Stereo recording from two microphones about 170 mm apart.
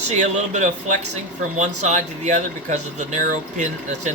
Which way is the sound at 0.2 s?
45° right (ahead or behind).